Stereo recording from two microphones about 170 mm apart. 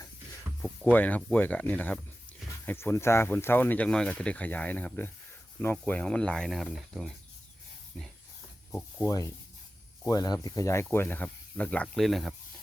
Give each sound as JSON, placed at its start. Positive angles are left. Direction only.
{"t": 0.6, "sound": "speech", "side_deg": 10}
{"t": 8.7, "sound": "speech", "side_deg": 15}